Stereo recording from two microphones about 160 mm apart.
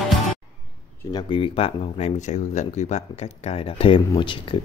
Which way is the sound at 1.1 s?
30° left (ahead or behind).